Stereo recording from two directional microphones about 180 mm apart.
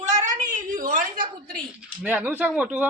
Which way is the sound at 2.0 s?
10° right (ahead or behind).